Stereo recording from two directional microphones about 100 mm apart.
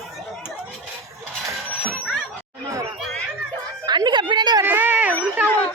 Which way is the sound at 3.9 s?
50° right (ahead or behind).